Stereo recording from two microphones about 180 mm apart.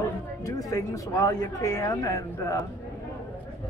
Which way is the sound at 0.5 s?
20° left (ahead or behind).